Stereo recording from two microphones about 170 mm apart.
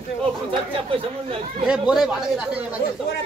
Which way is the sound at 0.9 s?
35° right (ahead or behind).